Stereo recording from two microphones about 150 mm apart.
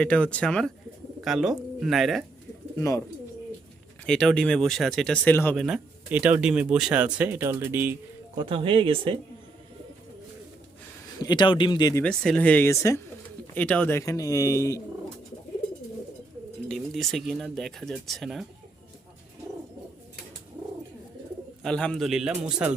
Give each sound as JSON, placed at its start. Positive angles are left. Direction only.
{"t": 0.0, "sound": "speech", "side_deg": 10}
{"t": 2.7, "sound": "speech", "side_deg": 20}
{"t": 4.0, "sound": "speech", "side_deg": 5}
{"t": 5.5, "sound": "speech", "side_deg": -5}
{"t": 8.4, "sound": "speech", "side_deg": -35}
{"t": 11.2, "sound": "speech", "side_deg": 30}
{"t": 12.0, "sound": "speech", "side_deg": 5}
{"t": 16.6, "sound": "speech", "side_deg": 0}
{"t": 21.6, "sound": "speech", "side_deg": 5}